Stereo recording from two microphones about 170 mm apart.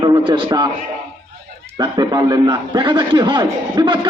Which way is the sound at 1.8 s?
20° right (ahead or behind).